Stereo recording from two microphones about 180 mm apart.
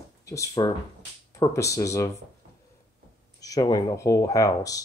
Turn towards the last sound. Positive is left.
turn(degrees=20)  # may be behind; listen again after turning